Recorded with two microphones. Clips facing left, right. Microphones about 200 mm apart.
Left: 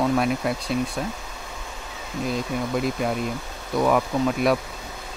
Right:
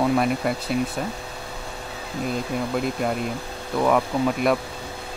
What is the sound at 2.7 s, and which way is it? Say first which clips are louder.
Speech: left 1 dB; centre (ahead or behind).